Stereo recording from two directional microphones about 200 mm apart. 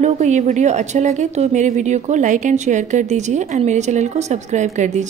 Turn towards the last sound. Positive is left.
turn(degrees=-35)  # may be behind; listen again after turning